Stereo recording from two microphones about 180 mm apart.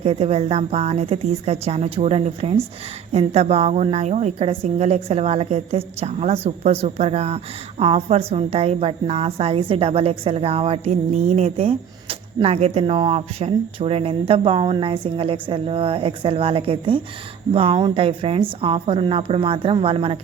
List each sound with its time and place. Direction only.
0.0 s a woman's voice: 35° right (ahead or behind)